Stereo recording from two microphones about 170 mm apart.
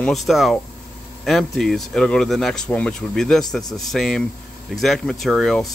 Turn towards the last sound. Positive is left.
turn(degrees=0)  # may be behind; listen again after turning